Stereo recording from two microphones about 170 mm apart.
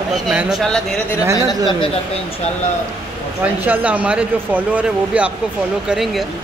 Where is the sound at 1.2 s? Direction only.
15° right (ahead or behind).